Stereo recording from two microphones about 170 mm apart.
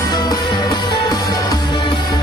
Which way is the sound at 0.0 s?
25° left (ahead or behind).